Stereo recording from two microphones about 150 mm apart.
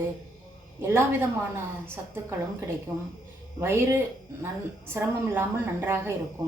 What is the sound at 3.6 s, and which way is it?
A woman's voice, 15° right (ahead or behind).